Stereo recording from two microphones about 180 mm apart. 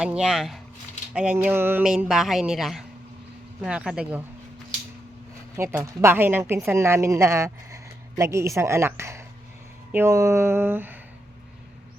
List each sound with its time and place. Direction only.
0.0 s speech: 5° right (ahead or behind)
5.5 s a woman's voice: 15° right (ahead or behind)